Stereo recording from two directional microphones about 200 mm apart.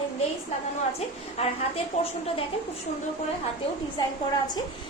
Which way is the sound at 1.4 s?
30° left (ahead or behind).